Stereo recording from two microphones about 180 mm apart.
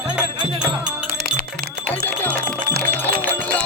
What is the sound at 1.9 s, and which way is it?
Music, 10° left (ahead or behind).